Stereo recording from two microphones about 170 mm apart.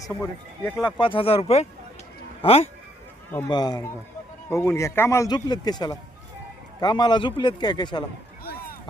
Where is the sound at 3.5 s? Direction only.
25° left (ahead or behind).